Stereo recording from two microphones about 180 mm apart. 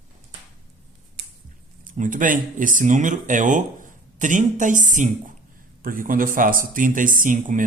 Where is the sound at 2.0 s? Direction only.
45° right (ahead or behind).